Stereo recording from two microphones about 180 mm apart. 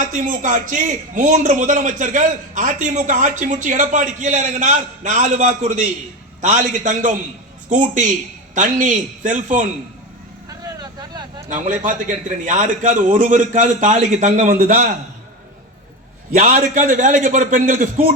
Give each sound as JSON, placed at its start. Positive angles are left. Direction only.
{"t": 0.0, "sound": "a man's voice", "side_deg": -45}
{"t": 10.6, "sound": "vehicle", "side_deg": -25}
{"t": 11.4, "sound": "a man's voice", "side_deg": -45}
{"t": 16.3, "sound": "a man's voice", "side_deg": -50}